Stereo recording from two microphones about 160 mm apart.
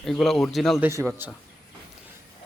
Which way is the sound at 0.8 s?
20° right (ahead or behind).